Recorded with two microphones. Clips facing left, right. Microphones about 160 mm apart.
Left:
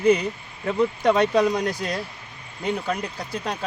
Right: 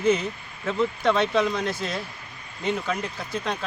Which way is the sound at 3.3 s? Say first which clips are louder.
Right 1 dB; 10° left (ahead or behind).